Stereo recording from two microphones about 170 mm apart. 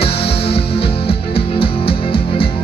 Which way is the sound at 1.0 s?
35° left (ahead or behind).